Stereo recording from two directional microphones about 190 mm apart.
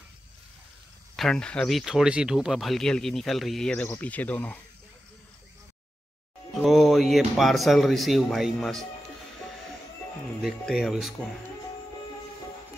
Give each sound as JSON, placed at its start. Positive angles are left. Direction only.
{"t": 1.1, "sound": "speech", "side_deg": 5}
{"t": 6.5, "sound": "speech", "side_deg": 0}
{"t": 10.4, "sound": "speech", "side_deg": 0}